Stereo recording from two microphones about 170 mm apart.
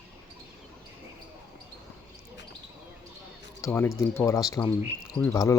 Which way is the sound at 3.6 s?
15° left (ahead or behind).